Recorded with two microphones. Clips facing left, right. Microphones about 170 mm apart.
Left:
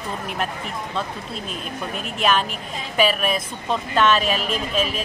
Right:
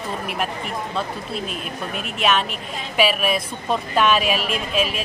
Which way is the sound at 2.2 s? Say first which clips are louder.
Even; centre (ahead or behind).